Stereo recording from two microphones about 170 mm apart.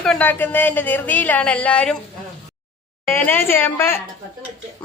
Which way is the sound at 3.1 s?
10° left (ahead or behind).